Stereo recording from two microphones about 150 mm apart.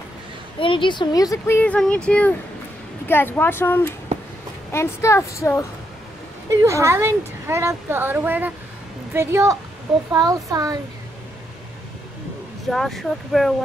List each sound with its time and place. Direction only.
0.6 s speech: 35° left (ahead or behind)
1.6 s a woman's voice: 10° left (ahead or behind)
6.5 s a woman's voice: 20° right (ahead or behind)
12.6 s speech: centre (ahead or behind)